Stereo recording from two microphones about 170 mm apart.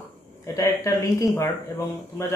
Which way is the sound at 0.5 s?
20° left (ahead or behind).